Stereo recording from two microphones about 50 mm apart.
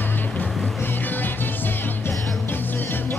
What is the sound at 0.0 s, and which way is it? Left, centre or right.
Music, left.